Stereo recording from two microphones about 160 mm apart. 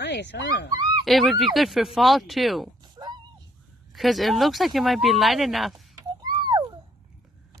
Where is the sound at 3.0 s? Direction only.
25° right (ahead or behind).